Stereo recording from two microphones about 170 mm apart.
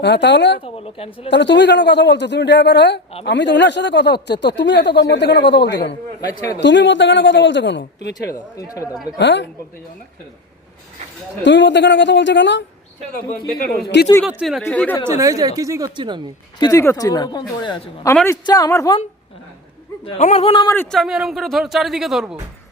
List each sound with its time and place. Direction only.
0.0 s speech: 90° left
0.6 s a woman's voice: 35° left (ahead or behind)
1.3 s speech: 90° left
8.0 s speech: 70° left (ahead or behind)
9.1 s speech: 90° left
11.4 s speech: 90° left
13.6 s speech: 60° left (ahead or behind)
14.3 s speech: 5° right (ahead or behind)
14.6 s speech: 10° left (ahead or behind)
15.0 s speech: 15° right (ahead or behind)
16.6 s speech: 20° left (ahead or behind)
20.2 s a woman's voice: 35° left (ahead or behind)
20.7 s speech: 20° left (ahead or behind)
20.9 s speech: centre (ahead or behind)